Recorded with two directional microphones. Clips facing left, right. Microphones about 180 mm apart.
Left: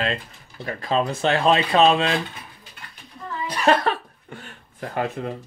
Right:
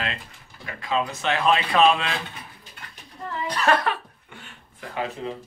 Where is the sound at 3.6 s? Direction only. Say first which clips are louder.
Left 3 dB; 25° left (ahead or behind); by 5.3 s 50° left (ahead or behind).